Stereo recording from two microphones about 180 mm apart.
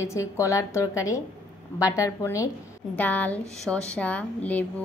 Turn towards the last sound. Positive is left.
turn(degrees=10)  # may be behind; listen again after turning